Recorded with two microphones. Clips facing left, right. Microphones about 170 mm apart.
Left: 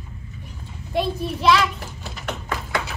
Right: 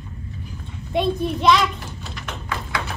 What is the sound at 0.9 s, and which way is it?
Speech, centre (ahead or behind).